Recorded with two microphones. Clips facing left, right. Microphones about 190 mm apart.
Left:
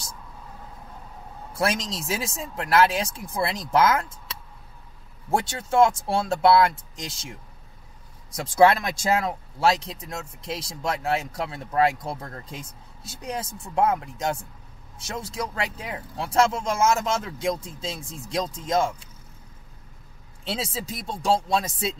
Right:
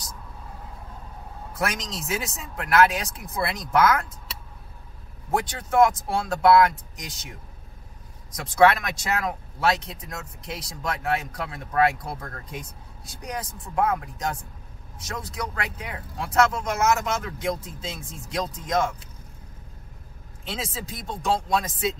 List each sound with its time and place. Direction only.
1.5 s speech: 30° left (ahead or behind)
5.3 s speech: 25° left (ahead or behind)
8.4 s speech: 30° left (ahead or behind)
20.4 s speech: 30° left (ahead or behind)